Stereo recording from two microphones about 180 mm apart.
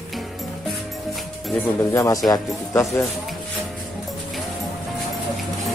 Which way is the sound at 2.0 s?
20° left (ahead or behind).